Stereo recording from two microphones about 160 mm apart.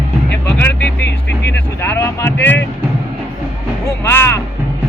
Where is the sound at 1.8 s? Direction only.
15° left (ahead or behind).